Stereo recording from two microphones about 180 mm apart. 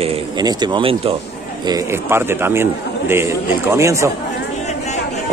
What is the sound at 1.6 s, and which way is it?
Speech, 15° right (ahead or behind).